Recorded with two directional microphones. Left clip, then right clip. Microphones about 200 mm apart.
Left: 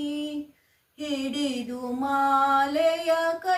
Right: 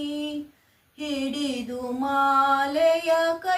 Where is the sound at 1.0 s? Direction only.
5° left (ahead or behind).